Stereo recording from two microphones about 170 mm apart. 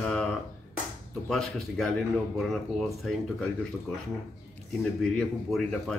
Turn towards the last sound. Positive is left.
turn(degrees=0)  # may be behind; listen again after turning